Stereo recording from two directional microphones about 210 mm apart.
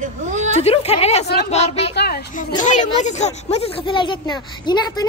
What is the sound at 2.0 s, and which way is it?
A woman's voice, 50° left (ahead or behind).